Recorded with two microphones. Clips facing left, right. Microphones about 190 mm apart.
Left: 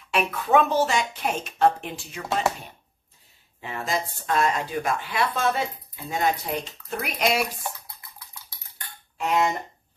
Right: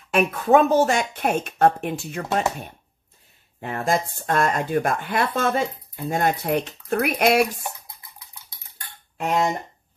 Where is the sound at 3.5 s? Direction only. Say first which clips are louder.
Right 5 dB; 50° right (ahead or behind).